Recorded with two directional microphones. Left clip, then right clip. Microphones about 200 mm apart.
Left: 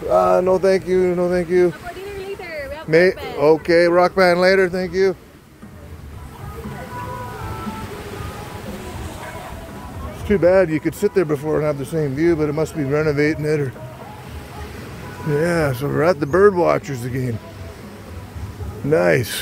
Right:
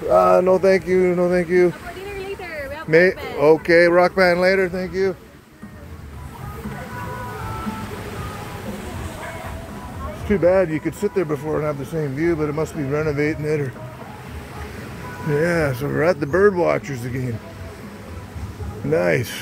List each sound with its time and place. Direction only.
0.1 s speech: 5° right (ahead or behind)
2.4 s a sound: 50° right (ahead or behind)
2.9 s speech: 10° left (ahead or behind); by 5.1 s 35° left (ahead or behind)
10.2 s speech: 25° left (ahead or behind)
15.3 s speech: 15° left (ahead or behind)
18.9 s speech: 25° left (ahead or behind)